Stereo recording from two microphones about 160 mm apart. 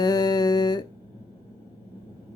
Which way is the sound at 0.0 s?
25° left (ahead or behind).